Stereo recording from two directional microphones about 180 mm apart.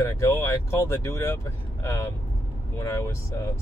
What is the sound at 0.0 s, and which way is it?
Speech, 15° left (ahead or behind).